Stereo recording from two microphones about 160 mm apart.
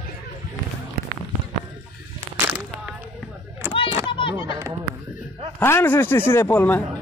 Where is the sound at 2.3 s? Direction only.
15° right (ahead or behind).